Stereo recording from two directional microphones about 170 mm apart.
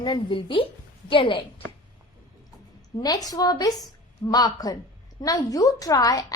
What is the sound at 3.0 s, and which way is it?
A woman's voice, 20° left (ahead or behind).